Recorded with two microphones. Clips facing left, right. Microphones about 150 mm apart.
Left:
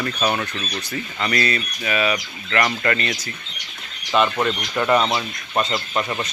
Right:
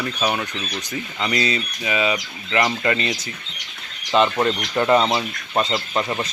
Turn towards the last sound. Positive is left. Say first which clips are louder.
# right 1 dB
turn(degrees=-15)  # may be behind; listen again after turning